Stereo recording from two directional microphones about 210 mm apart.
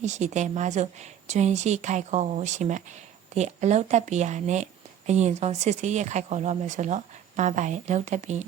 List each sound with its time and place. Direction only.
0.0 s speech: 35° right (ahead or behind)